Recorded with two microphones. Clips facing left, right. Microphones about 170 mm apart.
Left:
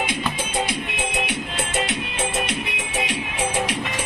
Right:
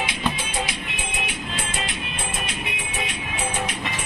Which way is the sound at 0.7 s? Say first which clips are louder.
Left 5 dB; 70° left (ahead or behind).